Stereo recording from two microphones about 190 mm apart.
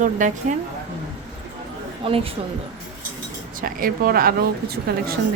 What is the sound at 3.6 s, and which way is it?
A woman's voice, 50° right (ahead or behind).